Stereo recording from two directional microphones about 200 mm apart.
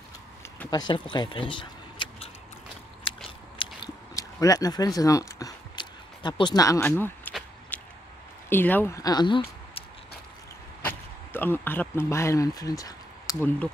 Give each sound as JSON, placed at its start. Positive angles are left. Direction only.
{"t": 0.7, "sound": "speech", "side_deg": 20}
{"t": 3.3, "sound": "biting", "side_deg": 25}
{"t": 7.7, "sound": "a sound", "side_deg": 10}
{"t": 8.5, "sound": "speech", "side_deg": 10}
{"t": 10.8, "sound": "speech", "side_deg": 10}